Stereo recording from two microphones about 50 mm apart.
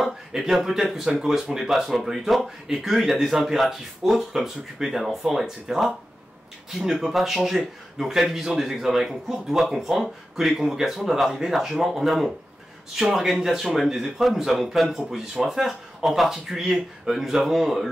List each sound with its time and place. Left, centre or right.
0.0 s speech: centre